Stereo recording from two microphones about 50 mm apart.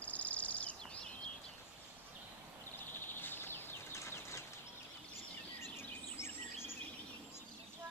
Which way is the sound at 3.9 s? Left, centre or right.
Left.